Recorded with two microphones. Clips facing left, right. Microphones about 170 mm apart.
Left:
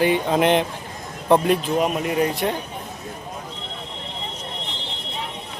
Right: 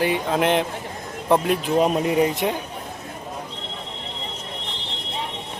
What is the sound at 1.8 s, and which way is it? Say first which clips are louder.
Speech: right 2 dB; 25° right (ahead or behind).